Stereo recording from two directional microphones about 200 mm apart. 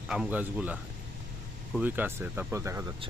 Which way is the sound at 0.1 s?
5° right (ahead or behind).